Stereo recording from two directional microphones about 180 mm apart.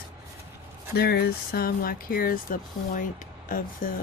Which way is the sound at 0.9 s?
60° left (ahead or behind).